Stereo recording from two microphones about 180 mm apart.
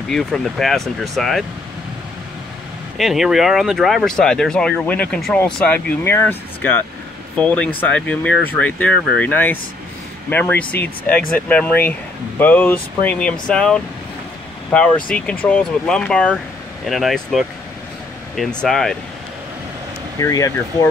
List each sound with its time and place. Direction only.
0.1 s speech: centre (ahead or behind)
3.0 s speech: centre (ahead or behind)
20.2 s speech: 20° left (ahead or behind)